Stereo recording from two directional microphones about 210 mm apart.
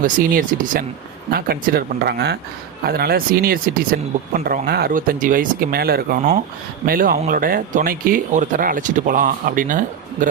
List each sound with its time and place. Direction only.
0.0 s speech: 40° right (ahead or behind)